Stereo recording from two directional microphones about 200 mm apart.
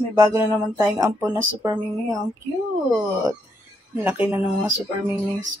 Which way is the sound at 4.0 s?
10° right (ahead or behind).